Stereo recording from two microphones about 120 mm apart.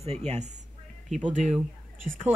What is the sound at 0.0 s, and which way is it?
Speech, 60° right (ahead or behind).